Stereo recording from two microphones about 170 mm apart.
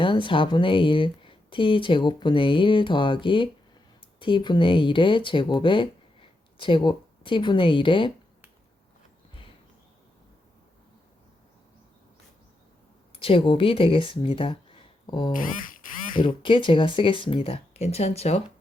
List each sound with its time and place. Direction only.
0.0 s speech: 30° left (ahead or behind)
13.1 s speech: 30° left (ahead or behind)
15.3 s speech: 50° left (ahead or behind)
16.2 s speech: 30° left (ahead or behind)